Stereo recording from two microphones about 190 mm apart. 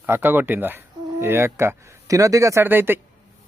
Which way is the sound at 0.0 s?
10° right (ahead or behind).